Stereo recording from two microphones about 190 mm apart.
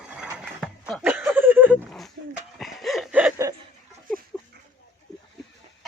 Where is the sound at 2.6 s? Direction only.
Centre (ahead or behind).